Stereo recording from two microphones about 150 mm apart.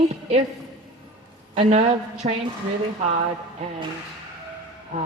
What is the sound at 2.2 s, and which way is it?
Speech, 45° right (ahead or behind).